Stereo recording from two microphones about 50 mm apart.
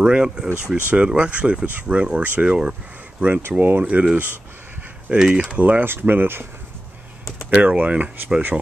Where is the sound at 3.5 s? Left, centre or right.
Right.